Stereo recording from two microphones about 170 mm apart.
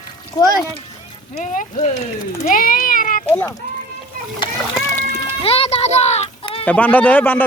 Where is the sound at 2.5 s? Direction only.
55° left (ahead or behind).